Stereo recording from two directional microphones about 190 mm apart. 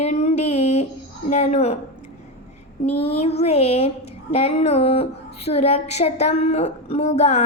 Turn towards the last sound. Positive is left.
turn(degrees=35)  # may be behind; listen again after turning